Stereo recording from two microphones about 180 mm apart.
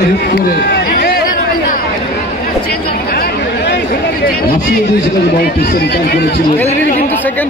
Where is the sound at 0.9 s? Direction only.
60° left (ahead or behind).